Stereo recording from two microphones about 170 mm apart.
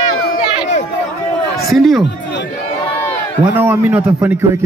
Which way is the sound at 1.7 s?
Centre (ahead or behind).